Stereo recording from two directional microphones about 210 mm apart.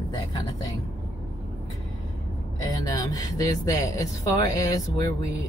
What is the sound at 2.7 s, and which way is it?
Speech, 15° left (ahead or behind).